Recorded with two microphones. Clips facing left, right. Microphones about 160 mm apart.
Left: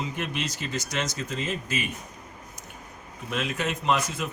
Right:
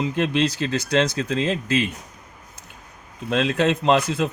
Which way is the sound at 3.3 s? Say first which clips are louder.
Right 9 dB; 90° right.